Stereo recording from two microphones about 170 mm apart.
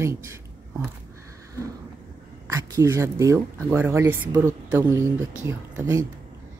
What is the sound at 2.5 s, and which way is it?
Speech, 15° right (ahead or behind).